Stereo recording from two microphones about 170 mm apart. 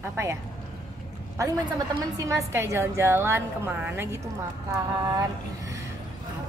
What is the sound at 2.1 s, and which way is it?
A woman's voice, 20° right (ahead or behind).